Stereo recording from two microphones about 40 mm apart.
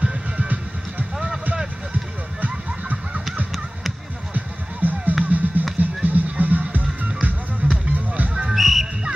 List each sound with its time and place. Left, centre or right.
0.0 s music: right
2.4 s a sound: right
4.3 s music: right
8.5 s music: centre